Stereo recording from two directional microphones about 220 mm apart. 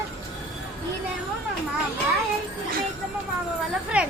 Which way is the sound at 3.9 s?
5° right (ahead or behind).